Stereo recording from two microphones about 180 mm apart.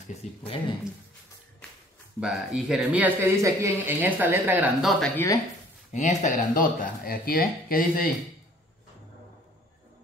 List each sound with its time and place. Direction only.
0.1 s speech: 35° left (ahead or behind)
2.1 s speech: 5° right (ahead or behind)
4.8 s speech: 5° left (ahead or behind)
5.9 s speech: 45° left (ahead or behind)